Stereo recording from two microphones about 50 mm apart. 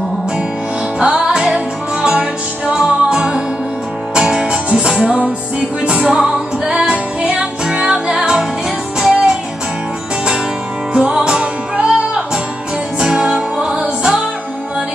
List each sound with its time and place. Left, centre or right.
0.9 s music: centre
6.1 s music: centre
6.7 s music: centre
10.9 s music: centre